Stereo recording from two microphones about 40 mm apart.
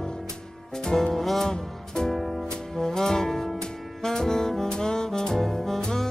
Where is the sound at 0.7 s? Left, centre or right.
Centre.